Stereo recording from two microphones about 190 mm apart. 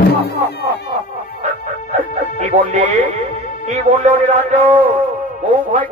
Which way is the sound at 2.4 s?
40° right (ahead or behind).